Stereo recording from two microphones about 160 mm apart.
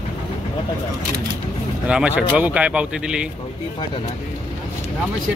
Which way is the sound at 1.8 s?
5° right (ahead or behind).